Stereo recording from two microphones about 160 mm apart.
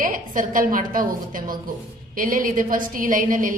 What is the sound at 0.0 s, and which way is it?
A woman's voice, 60° right (ahead or behind).